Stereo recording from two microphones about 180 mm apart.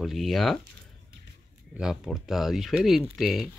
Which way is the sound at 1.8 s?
5° right (ahead or behind).